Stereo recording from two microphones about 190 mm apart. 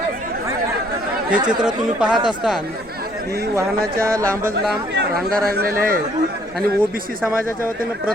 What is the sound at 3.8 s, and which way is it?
Speech, 50° right (ahead or behind).